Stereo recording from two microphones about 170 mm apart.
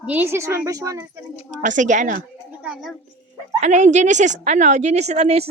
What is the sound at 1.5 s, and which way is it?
Speech, 45° right (ahead or behind).